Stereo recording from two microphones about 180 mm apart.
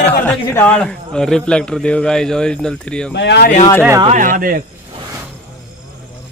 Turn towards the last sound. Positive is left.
turn(degrees=-50)  # may be behind; listen again after turning